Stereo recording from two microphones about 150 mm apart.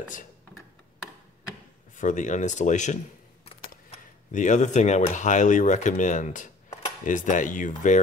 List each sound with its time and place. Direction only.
2.0 s speech: 55° left (ahead or behind)
4.3 s speech: 55° left (ahead or behind)